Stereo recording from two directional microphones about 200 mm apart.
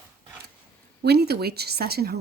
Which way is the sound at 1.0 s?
55° right (ahead or behind).